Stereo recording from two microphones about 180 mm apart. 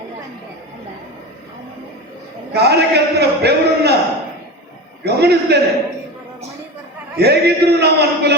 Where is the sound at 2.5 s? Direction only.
65° right (ahead or behind).